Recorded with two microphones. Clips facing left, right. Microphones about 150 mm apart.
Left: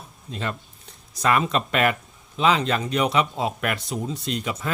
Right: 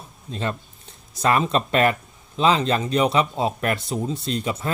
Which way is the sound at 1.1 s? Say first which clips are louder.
Right 2 dB; 30° right (ahead or behind).